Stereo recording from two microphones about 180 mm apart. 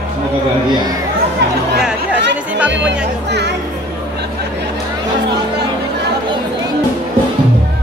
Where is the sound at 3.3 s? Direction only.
70° right (ahead or behind).